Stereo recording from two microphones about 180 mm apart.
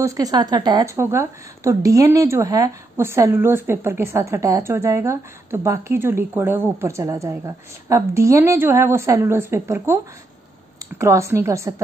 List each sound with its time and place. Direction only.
0.0 s a woman's voice: 20° right (ahead or behind)
11.0 s a woman's voice: 15° right (ahead or behind)